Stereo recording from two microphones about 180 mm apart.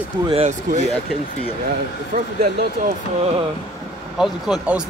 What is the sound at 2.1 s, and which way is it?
Speech, 45° right (ahead or behind).